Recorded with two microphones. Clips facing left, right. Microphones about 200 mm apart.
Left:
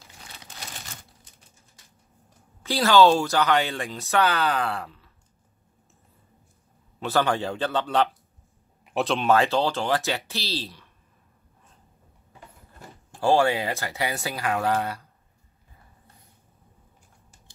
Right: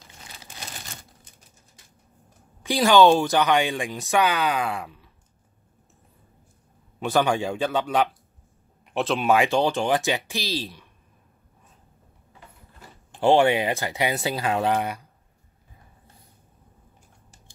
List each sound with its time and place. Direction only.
2.6 s speech: 15° right (ahead or behind)
7.0 s speech: 15° right (ahead or behind)
8.8 s speech: centre (ahead or behind)
13.2 s speech: 20° right (ahead or behind)